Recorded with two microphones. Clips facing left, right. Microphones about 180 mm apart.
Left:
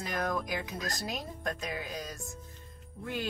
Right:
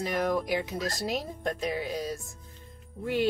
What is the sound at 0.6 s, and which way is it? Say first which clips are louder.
Speech: right 5 dB; 25° right (ahead or behind).